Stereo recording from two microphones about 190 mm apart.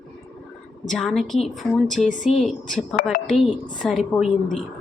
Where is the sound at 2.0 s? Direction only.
40° left (ahead or behind).